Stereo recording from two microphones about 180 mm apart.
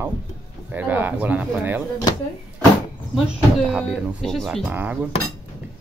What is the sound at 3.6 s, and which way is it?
Speech, 5° right (ahead or behind).